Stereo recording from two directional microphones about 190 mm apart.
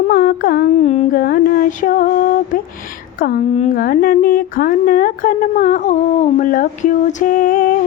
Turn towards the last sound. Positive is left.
turn(degrees=45)  # may be behind; listen again after turning